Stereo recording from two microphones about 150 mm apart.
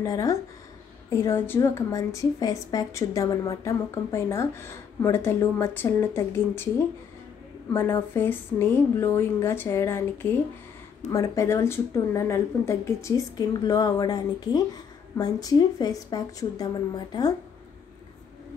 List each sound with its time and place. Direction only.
0.0 s a woman's voice: 20° left (ahead or behind)
7.7 s a woman's voice: 15° left (ahead or behind)